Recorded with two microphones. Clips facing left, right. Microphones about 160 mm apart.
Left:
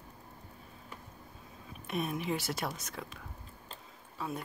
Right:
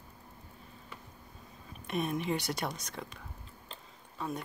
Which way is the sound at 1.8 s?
Centre (ahead or behind).